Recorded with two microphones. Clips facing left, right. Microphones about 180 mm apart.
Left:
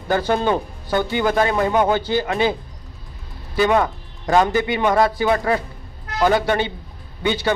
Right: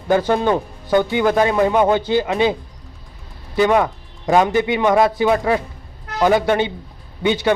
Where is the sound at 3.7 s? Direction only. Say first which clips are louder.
Right 2 dB; 10° right (ahead or behind).